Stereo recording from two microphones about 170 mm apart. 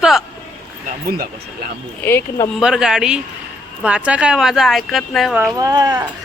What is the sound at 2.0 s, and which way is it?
Speech, 15° left (ahead or behind).